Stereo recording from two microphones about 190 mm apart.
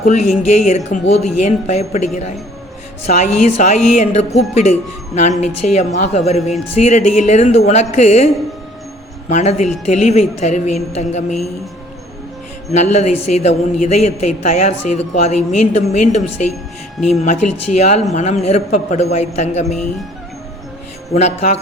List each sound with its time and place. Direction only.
0.0 s a woman's voice: 35° left (ahead or behind)
3.1 s a woman's voice: 40° left (ahead or behind)
9.3 s a woman's voice: 35° left (ahead or behind)
12.7 s a woman's voice: 35° left (ahead or behind)
21.1 s a woman's voice: 35° left (ahead or behind)